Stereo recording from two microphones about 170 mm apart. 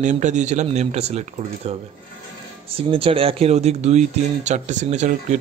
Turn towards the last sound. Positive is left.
turn(degrees=-45)  # may be behind; listen again after turning